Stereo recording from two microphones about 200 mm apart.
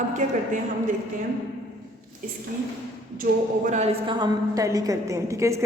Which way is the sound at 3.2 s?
40° right (ahead or behind).